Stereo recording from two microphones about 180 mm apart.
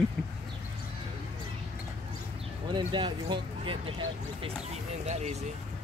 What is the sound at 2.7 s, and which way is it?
Speech, 25° right (ahead or behind).